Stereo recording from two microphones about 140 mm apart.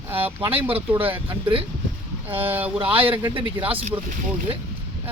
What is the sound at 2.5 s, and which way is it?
Speech, 10° right (ahead or behind).